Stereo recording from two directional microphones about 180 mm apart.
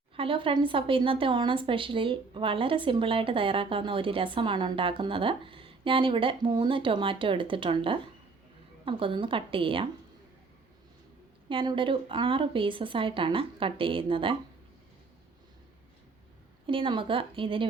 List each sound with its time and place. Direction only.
0.2 s a woman's voice: 30° right (ahead or behind)
11.4 s a woman's voice: 30° right (ahead or behind)
16.6 s a woman's voice: 30° right (ahead or behind)